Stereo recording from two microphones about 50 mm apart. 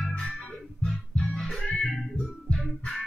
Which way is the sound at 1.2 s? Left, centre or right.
Centre.